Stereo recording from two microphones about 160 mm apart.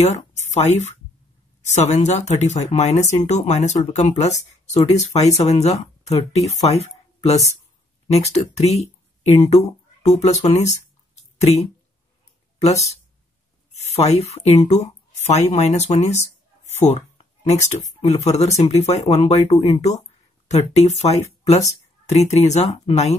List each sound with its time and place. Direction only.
0.0 s speech: 45° left (ahead or behind)
12.5 s speech: 40° left (ahead or behind)